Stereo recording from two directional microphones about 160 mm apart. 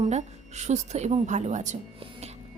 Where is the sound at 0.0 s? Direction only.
45° right (ahead or behind).